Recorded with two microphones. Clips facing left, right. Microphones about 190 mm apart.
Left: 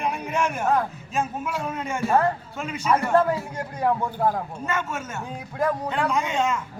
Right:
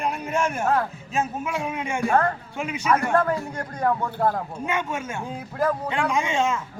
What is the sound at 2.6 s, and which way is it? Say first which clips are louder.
Speech: right 2 dB; 10° right (ahead or behind).